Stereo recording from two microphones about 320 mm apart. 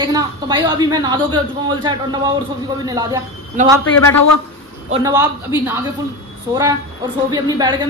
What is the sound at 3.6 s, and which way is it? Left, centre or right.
Speech, right.